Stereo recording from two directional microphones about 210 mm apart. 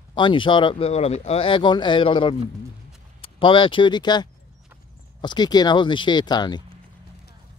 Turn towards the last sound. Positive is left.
turn(degrees=20)  # may be behind; listen again after turning